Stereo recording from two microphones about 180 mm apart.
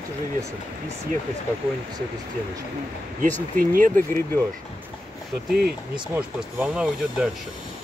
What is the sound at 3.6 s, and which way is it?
Speech, 50° right (ahead or behind).